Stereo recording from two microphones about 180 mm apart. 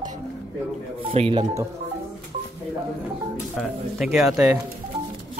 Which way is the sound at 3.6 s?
Centre (ahead or behind).